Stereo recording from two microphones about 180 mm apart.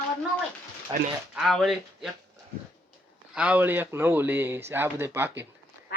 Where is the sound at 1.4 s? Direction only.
Centre (ahead or behind).